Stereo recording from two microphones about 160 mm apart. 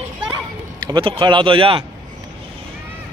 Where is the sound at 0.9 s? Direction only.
30° right (ahead or behind).